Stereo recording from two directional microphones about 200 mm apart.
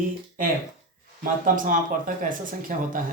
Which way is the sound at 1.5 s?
40° right (ahead or behind).